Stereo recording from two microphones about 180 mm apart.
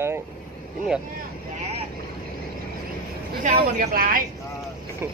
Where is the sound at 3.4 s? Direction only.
55° right (ahead or behind).